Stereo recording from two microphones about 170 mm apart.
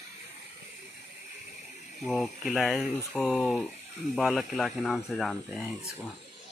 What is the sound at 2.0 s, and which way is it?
Speech, centre (ahead or behind).